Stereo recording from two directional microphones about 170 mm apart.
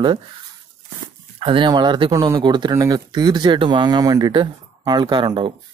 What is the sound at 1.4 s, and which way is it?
Speech, 30° right (ahead or behind).